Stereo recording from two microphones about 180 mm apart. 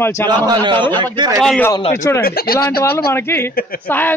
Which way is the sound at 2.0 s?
15° left (ahead or behind).